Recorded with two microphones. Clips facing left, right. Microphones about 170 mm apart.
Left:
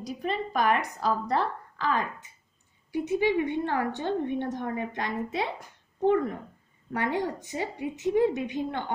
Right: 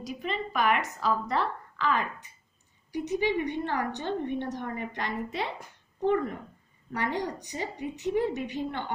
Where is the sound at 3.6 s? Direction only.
50° left (ahead or behind).